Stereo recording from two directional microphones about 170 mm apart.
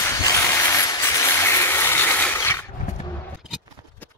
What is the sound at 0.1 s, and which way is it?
Vehicle, 20° left (ahead or behind).